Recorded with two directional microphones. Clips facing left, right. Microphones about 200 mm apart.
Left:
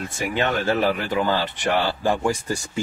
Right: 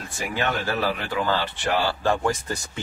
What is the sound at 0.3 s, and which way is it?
A man's voice, 20° left (ahead or behind).